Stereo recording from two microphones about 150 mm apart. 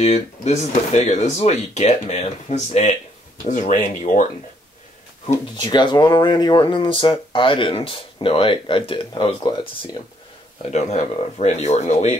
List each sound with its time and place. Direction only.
0.0 s speech: 45° left (ahead or behind)
5.6 s speech: 30° left (ahead or behind)
10.7 s speech: 50° left (ahead or behind)